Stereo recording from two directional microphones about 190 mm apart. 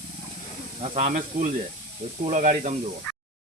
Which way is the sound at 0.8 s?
35° right (ahead or behind).